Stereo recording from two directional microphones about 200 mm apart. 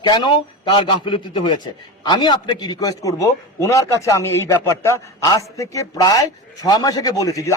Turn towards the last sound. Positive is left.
turn(degrees=15)  # may be behind; listen again after turning